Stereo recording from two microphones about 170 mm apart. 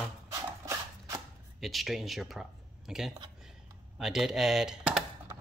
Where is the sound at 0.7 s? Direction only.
20° right (ahead or behind).